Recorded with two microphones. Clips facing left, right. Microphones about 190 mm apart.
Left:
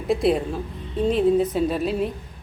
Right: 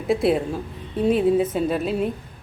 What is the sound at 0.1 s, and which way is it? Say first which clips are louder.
Speech: right 1 dB; centre (ahead or behind).